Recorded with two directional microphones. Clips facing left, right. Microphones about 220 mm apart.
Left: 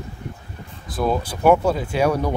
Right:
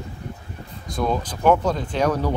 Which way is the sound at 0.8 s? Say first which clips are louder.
Left 2 dB; 5° left (ahead or behind).